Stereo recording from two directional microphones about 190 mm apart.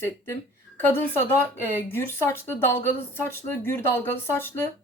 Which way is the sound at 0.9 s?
10° left (ahead or behind).